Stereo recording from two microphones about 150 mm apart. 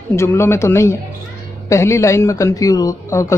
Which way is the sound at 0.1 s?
20° left (ahead or behind).